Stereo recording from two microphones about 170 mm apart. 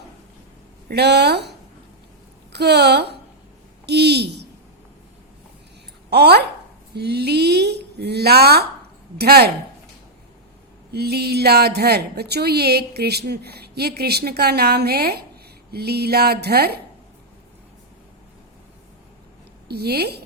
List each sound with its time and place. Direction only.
0.9 s speech: 75° right (ahead or behind)
6.1 s speech: 75° right (ahead or behind)
10.9 s speech: 70° right (ahead or behind)
19.6 s speech: 70° right (ahead or behind)